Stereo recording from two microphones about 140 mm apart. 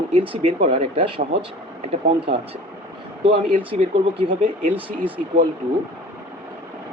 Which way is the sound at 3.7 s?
55° right (ahead or behind).